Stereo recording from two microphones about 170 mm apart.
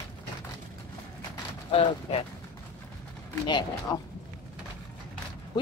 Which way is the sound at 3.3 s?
25° left (ahead or behind).